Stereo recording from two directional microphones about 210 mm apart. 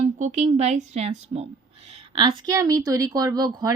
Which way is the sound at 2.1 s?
20° right (ahead or behind).